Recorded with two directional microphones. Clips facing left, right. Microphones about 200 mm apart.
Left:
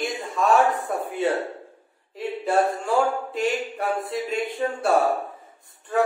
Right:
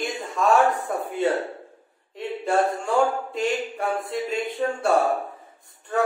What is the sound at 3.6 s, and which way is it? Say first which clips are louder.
Speech: even; centre (ahead or behind).